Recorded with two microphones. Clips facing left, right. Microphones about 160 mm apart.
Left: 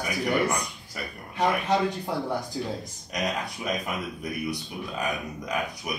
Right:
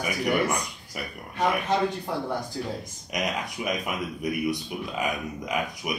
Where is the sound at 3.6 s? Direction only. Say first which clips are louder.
Right 1 dB; 15° right (ahead or behind).